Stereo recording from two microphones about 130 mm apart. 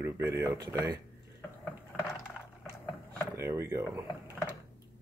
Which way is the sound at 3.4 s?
20° right (ahead or behind).